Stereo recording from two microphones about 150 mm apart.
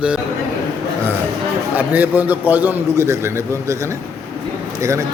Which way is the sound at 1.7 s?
10° right (ahead or behind).